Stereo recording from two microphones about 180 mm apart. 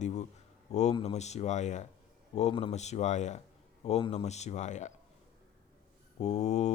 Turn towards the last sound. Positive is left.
turn(degrees=40)  # may be behind; listen again after turning